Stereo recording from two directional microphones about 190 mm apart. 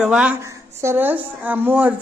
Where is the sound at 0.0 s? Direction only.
5° right (ahead or behind).